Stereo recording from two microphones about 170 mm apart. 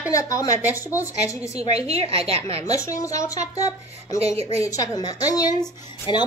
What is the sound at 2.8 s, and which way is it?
Speech, 20° left (ahead or behind).